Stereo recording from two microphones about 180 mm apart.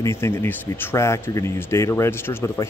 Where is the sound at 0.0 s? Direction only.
15° left (ahead or behind).